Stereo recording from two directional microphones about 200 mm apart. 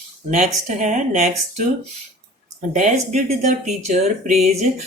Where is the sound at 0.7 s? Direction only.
40° right (ahead or behind).